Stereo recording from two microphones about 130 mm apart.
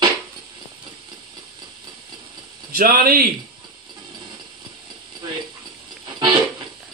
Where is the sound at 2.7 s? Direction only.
90° right.